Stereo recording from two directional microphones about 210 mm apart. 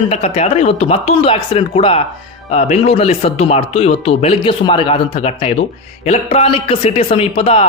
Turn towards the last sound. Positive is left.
turn(degrees=25)  # may be behind; listen again after turning